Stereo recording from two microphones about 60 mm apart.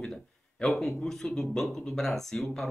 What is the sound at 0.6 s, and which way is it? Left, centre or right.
Speech, centre.